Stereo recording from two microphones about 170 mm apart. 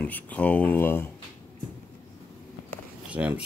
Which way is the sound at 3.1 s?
5° right (ahead or behind).